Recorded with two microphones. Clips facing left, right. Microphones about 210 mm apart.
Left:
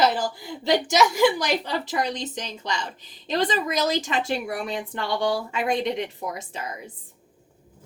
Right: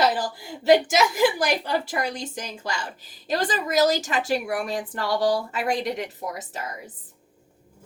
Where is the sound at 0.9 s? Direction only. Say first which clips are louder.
Left 1 dB; 50° right (ahead or behind).